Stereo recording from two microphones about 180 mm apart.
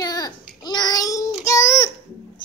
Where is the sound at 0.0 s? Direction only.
20° left (ahead or behind).